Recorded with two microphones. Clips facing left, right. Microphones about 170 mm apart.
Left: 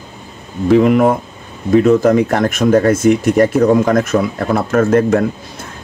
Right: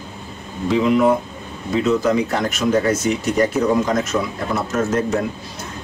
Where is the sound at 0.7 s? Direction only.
55° left (ahead or behind).